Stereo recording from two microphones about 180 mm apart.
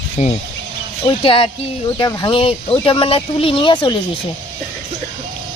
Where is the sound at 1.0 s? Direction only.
30° left (ahead or behind).